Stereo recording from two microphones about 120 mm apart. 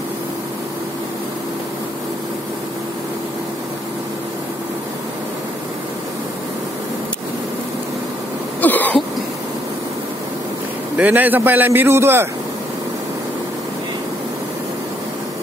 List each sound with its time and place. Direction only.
8.5 s throat clearing: 15° left (ahead or behind)
11.0 s a man's voice: 15° right (ahead or behind)